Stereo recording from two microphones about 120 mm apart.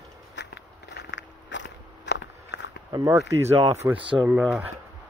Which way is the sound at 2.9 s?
25° right (ahead or behind).